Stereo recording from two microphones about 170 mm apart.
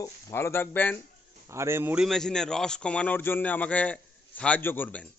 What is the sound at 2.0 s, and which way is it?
A man's voice, 5° left (ahead or behind).